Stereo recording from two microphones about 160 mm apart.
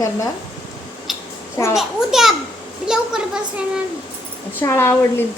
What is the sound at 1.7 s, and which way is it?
A child's voice, centre (ahead or behind).